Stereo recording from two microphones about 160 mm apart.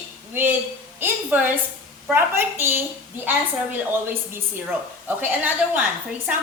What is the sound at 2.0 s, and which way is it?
A woman's voice, 15° right (ahead or behind).